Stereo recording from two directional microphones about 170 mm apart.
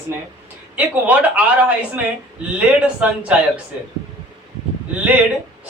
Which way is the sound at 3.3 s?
5° right (ahead or behind).